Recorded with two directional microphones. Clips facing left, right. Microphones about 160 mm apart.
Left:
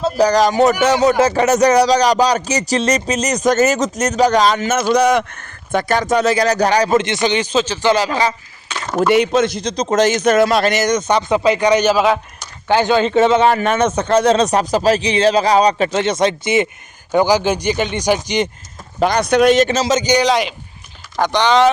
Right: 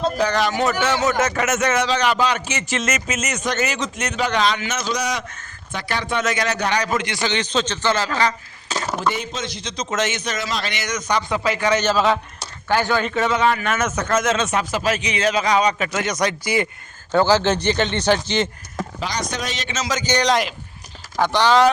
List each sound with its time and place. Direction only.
0.2 s speech: 40° left (ahead or behind); by 8.4 s 15° left (ahead or behind)
9.1 s speech: 65° left (ahead or behind)
9.6 s speech: 35° left (ahead or behind)
10.3 s speech: 55° left (ahead or behind); by 11.0 s 40° left (ahead or behind)
11.1 s a man's voice: 25° left (ahead or behind)
17.1 s a man's voice: 15° left (ahead or behind)
18.9 s speech: 55° left (ahead or behind)
19.7 s a man's voice: 25° left (ahead or behind)
20.2 s speech: centre (ahead or behind)